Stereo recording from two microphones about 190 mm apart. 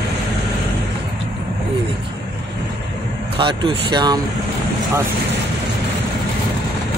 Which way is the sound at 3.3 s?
25° right (ahead or behind).